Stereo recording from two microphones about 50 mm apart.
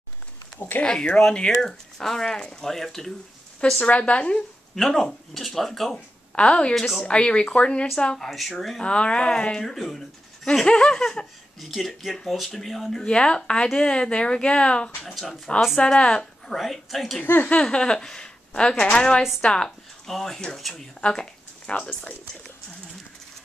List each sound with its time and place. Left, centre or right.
0.6 s speech: left
0.8 s speech: centre
3.8 s a woman's voice: left
4.7 s speech: centre
6.3 s a woman's voice: left
8.2 s speech: centre
8.8 s speech: centre
13.0 s a woman's voice: centre
15.1 s speech: centre
15.8 s speech: centre
17.2 s speech: left
17.6 s a woman's voice: centre
20.1 s speech: centre
21.1 s speech: centre